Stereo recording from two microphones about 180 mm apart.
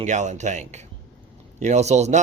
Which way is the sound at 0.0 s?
40° right (ahead or behind).